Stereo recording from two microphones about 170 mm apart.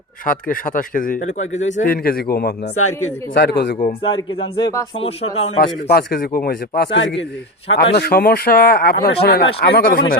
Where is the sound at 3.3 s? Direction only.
75° left (ahead or behind).